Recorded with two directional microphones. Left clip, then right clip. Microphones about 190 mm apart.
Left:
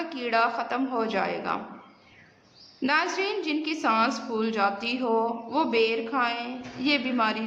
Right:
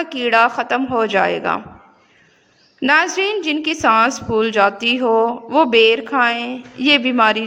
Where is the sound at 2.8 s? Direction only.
40° right (ahead or behind).